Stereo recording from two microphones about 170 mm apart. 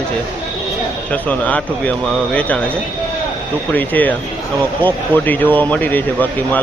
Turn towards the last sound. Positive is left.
turn(degrees=10)  # may be behind; listen again after turning